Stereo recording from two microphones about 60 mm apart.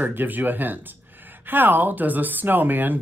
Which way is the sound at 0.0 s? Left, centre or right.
Right.